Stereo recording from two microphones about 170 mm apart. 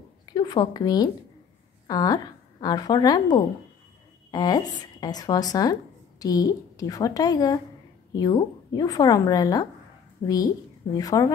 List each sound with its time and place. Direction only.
0.3 s speech: 25° left (ahead or behind)